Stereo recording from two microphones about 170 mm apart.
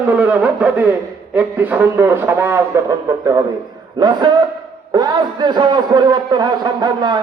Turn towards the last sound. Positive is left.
turn(degrees=-25)  # may be behind; listen again after turning